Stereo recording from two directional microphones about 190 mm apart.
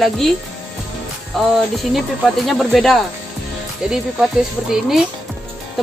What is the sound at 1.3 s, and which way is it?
Music, centre (ahead or behind).